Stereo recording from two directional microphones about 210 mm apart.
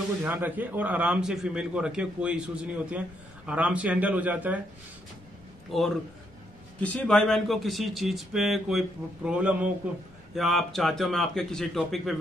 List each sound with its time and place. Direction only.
0.2 s a man's voice: 10° right (ahead or behind)
5.7 s speech: centre (ahead or behind)